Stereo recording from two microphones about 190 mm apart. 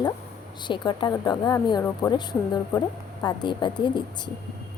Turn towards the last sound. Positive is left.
turn(degrees=25)  # may be behind; listen again after turning